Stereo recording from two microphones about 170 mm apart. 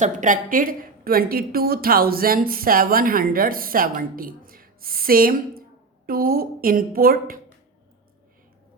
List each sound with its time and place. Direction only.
0.0 s a woman's voice: 45° right (ahead or behind)